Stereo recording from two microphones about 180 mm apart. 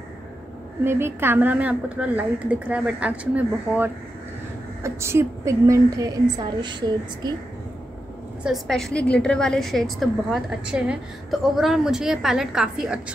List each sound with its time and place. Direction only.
0.8 s a woman's voice: 10° right (ahead or behind)
8.5 s a woman's voice: centre (ahead or behind)